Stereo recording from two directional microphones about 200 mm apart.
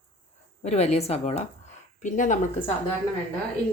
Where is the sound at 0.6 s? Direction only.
35° left (ahead or behind).